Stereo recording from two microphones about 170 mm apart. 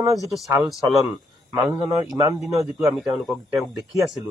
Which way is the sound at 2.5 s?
20° right (ahead or behind).